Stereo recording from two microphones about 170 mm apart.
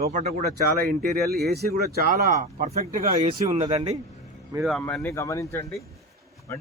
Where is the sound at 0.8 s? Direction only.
65° right (ahead or behind).